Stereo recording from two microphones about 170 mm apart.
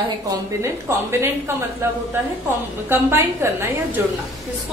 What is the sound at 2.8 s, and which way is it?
A woman's voice, 15° right (ahead or behind).